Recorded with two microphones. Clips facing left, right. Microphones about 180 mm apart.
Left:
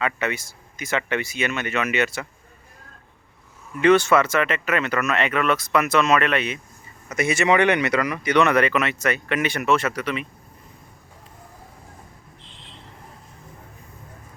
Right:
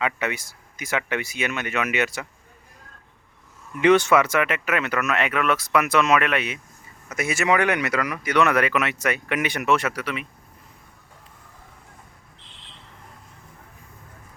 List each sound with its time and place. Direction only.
0.0 s speech: 10° right (ahead or behind)
3.8 s speech: 15° right (ahead or behind)